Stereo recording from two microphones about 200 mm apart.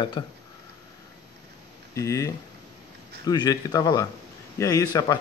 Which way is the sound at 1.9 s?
15° left (ahead or behind).